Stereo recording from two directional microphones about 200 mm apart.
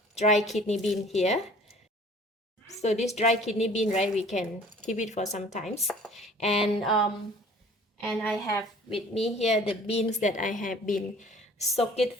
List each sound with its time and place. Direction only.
0.1 s a sound: 30° left (ahead or behind)
0.3 s speech: centre (ahead or behind)
1.1 s a woman's voice: 35° left (ahead or behind)
2.6 s a sound: 35° left (ahead or behind)
3.1 s a woman's voice: 35° left (ahead or behind)
5.8 s speech: centre (ahead or behind)
6.3 s a sound: 30° left (ahead or behind)
6.6 s speech: centre (ahead or behind)
8.0 s a woman's voice: 10° left (ahead or behind)
8.9 s a woman's voice: 25° left (ahead or behind)